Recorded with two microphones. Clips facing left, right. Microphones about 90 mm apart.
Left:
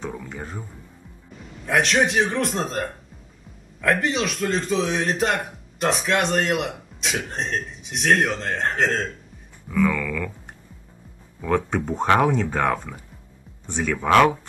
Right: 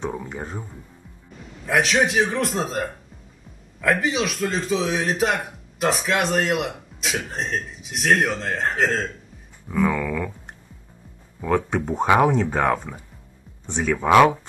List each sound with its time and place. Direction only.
0.0 s speech: 25° right (ahead or behind)
1.7 s a man's voice: centre (ahead or behind)
9.7 s speech: 20° right (ahead or behind)
11.4 s speech: 5° right (ahead or behind)